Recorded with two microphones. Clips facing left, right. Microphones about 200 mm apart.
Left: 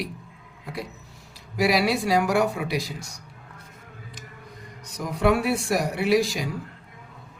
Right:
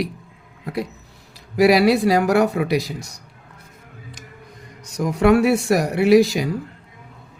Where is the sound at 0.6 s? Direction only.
65° right (ahead or behind).